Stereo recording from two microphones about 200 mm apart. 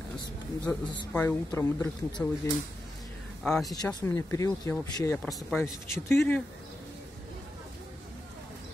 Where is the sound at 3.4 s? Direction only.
Centre (ahead or behind).